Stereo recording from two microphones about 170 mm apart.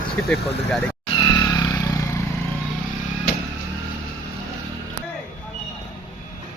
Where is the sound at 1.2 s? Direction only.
25° left (ahead or behind).